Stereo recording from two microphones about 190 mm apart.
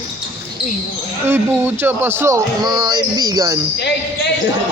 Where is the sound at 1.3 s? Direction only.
10° right (ahead or behind).